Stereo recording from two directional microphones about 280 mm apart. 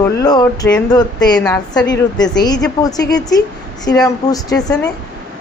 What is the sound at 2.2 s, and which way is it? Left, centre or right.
A woman's voice, centre.